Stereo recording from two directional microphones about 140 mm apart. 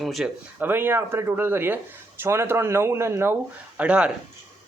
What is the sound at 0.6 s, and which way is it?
A man's voice, 15° right (ahead or behind).